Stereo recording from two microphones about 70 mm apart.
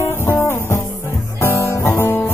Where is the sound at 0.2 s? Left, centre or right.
Left.